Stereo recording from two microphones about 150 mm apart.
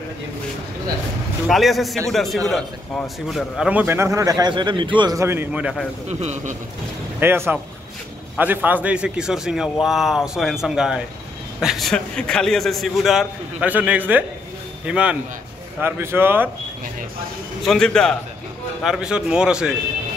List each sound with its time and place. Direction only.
1.5 s a man's voice: centre (ahead or behind)
6.0 s a man's voice: 50° right (ahead or behind)
7.2 s a man's voice: 15° right (ahead or behind)
8.6 s a man's voice: 10° right (ahead or behind)
17.6 s a man's voice: 5° left (ahead or behind)